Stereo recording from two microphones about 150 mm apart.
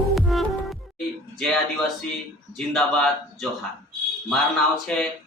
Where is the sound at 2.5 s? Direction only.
Centre (ahead or behind).